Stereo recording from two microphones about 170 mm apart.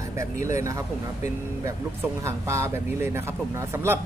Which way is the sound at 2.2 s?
15° right (ahead or behind).